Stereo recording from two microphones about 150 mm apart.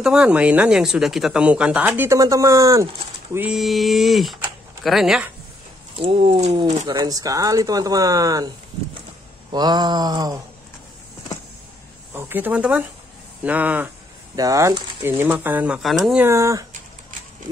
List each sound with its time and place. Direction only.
0.0 s speech: 5° right (ahead or behind)
3.3 s speech: 5° right (ahead or behind)
5.9 s speech: 40° right (ahead or behind)
6.9 s speech: 25° right (ahead or behind)
9.5 s speech: 30° right (ahead or behind)
12.1 s speech: 15° right (ahead or behind)
14.3 s speech: 25° right (ahead or behind); by 16.2 s centre (ahead or behind)
16.2 s speech: 20° right (ahead or behind)